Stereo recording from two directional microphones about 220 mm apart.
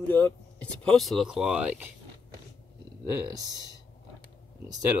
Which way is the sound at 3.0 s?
15° right (ahead or behind).